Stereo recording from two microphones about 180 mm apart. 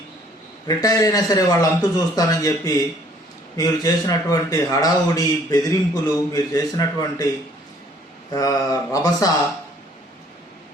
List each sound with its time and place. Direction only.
0.7 s a man's voice: 20° left (ahead or behind)
8.3 s a man's voice: 20° left (ahead or behind)